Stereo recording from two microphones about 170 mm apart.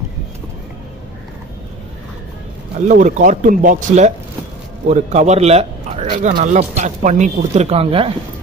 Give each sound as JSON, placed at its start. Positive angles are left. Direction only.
{"t": 2.9, "sound": "speech", "side_deg": -50}
{"t": 6.3, "sound": "speech", "side_deg": -50}